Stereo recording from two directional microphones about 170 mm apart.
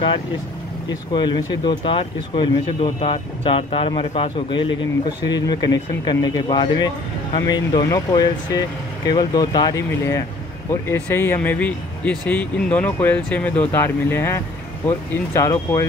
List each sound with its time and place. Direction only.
1.1 s speech: 25° left (ahead or behind)